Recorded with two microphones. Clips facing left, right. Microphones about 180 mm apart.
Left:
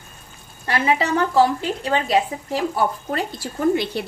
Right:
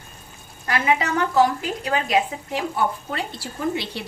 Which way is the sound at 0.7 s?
30° left (ahead or behind).